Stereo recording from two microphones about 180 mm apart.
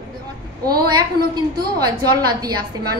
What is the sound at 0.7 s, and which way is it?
A woman's voice, 20° right (ahead or behind).